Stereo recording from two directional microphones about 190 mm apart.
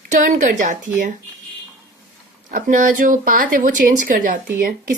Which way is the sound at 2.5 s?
45° right (ahead or behind).